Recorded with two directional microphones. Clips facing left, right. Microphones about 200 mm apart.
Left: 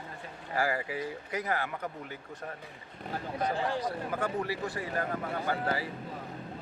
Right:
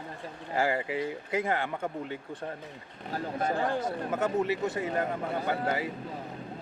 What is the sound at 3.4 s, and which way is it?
Speech, 50° right (ahead or behind).